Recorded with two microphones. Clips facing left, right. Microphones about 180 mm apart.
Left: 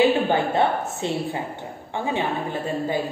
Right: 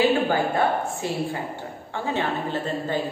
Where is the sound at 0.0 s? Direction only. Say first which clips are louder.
Left 2 dB; 20° left (ahead or behind).